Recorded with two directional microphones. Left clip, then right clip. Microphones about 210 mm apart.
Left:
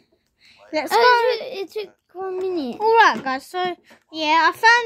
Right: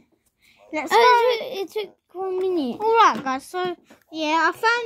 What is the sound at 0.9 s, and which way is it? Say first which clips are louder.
A child's voice: even; 5° right (ahead or behind).